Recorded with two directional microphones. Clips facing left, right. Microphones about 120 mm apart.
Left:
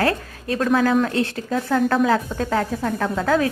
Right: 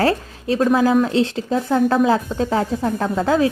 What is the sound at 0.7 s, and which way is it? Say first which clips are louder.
A woman's voice: right 1 dB; 10° right (ahead or behind).